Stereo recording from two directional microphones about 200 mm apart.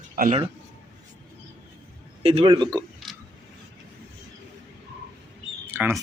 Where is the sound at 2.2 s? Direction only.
25° right (ahead or behind).